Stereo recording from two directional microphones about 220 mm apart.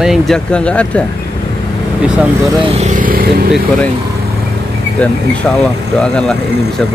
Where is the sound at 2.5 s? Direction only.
25° right (ahead or behind); by 3.5 s 40° right (ahead or behind).